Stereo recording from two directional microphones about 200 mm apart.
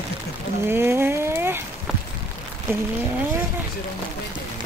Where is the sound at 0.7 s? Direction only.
10° right (ahead or behind).